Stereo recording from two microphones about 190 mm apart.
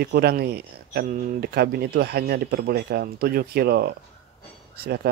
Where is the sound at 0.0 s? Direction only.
55° right (ahead or behind).